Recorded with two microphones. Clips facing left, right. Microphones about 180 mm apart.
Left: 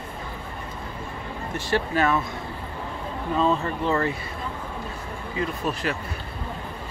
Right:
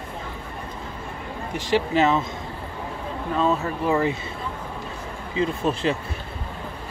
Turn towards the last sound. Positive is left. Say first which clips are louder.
# right 4 dB
turn(degrees=-25)  # may be behind; listen again after turning